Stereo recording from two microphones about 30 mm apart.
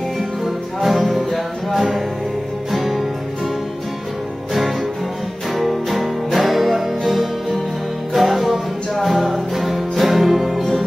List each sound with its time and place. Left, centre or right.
0.7 s music: centre
5.5 s music: centre